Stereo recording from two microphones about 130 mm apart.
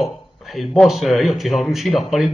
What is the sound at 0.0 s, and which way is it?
Speech, centre (ahead or behind).